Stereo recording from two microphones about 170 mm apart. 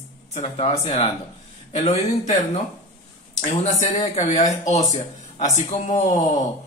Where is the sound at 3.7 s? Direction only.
45° left (ahead or behind).